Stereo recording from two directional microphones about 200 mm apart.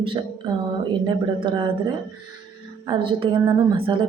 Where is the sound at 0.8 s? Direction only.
25° right (ahead or behind).